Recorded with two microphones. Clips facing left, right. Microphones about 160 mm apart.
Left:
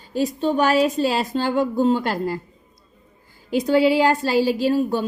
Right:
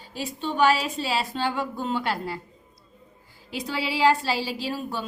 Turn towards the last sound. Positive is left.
turn(degrees=45)  # may be behind; listen again after turning